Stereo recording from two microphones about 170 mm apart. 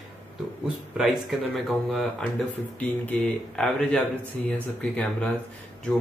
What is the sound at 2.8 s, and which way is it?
Speech, 5° left (ahead or behind).